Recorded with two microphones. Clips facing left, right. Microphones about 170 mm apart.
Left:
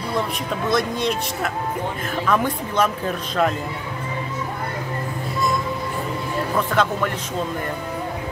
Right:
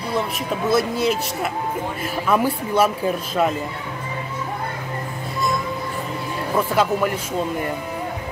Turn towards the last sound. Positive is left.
turn(degrees=-10)  # may be behind; listen again after turning